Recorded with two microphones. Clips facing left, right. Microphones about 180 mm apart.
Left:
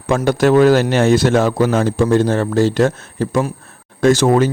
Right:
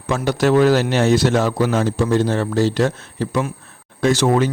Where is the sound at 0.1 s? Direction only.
50° left (ahead or behind).